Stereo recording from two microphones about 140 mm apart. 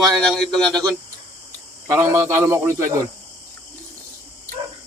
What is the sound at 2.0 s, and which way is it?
A man's voice, 20° right (ahead or behind).